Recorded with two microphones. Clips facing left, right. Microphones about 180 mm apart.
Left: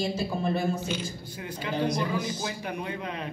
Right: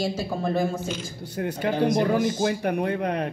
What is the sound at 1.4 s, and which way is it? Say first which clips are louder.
Speech: right 6 dB; 55° right (ahead or behind).